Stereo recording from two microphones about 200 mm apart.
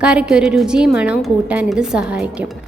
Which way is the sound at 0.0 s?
5° right (ahead or behind).